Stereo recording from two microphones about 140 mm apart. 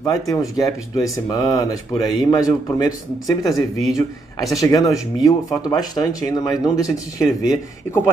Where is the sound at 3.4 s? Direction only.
Centre (ahead or behind).